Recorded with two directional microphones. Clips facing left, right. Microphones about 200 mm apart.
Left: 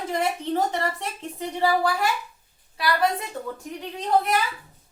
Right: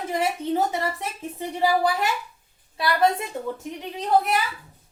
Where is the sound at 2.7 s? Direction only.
25° right (ahead or behind).